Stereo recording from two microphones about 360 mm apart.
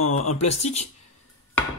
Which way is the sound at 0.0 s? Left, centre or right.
Left.